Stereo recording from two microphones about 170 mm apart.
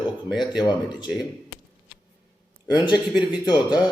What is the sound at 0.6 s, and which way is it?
Speech, 5° right (ahead or behind).